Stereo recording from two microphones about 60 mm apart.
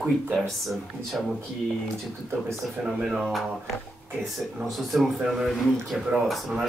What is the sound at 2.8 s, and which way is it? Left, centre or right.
Mantra, centre.